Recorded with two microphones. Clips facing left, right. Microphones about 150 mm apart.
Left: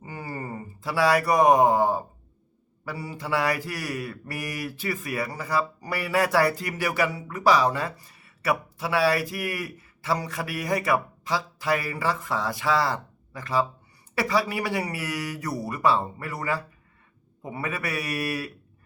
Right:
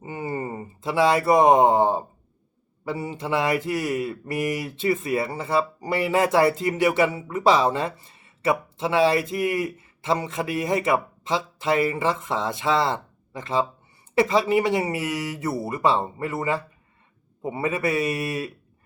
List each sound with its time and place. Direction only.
0.0 s speech: 20° right (ahead or behind)